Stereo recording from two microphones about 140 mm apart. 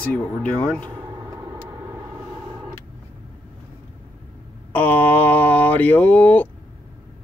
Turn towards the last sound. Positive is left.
turn(degrees=10)  # may be behind; listen again after turning